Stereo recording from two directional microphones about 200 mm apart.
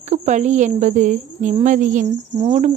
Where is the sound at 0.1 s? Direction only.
35° right (ahead or behind).